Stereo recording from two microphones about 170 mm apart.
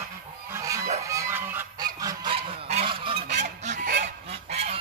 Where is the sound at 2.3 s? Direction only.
35° right (ahead or behind).